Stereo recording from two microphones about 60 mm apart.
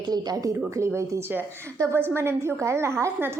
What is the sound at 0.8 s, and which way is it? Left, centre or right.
Speech, right.